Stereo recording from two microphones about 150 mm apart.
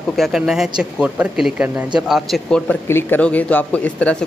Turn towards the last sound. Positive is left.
turn(degrees=10)  # may be behind; listen again after turning